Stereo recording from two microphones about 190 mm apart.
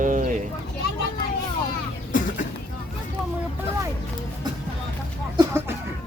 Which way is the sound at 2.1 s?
45° left (ahead or behind).